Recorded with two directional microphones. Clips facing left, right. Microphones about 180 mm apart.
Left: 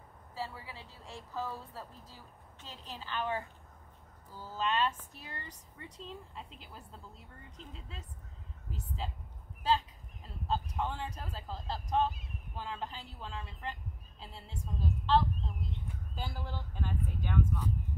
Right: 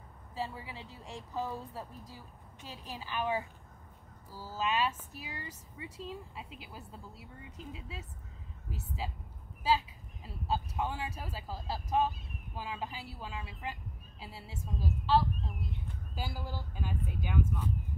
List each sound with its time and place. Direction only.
0.4 s a woman's voice: 20° right (ahead or behind)